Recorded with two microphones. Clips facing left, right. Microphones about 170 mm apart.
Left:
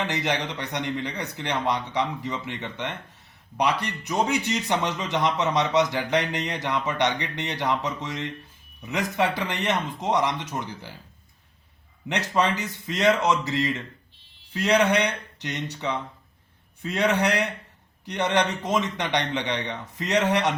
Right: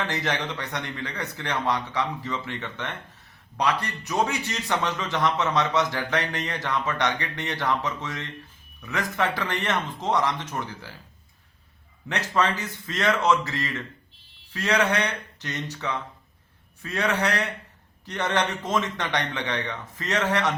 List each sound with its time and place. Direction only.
0.0 s a man's voice: 15° left (ahead or behind)
12.0 s a man's voice: 15° left (ahead or behind)